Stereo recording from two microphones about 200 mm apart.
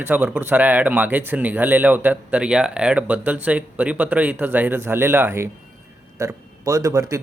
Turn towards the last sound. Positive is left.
turn(degrees=-15)  # may be behind; listen again after turning